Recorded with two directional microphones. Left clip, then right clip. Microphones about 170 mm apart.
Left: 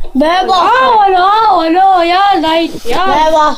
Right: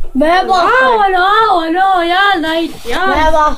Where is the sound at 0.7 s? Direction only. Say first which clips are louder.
Left 2 dB; 40° right (ahead or behind).